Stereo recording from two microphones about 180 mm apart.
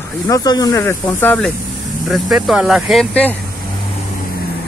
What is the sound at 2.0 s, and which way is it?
Speech, centre (ahead or behind).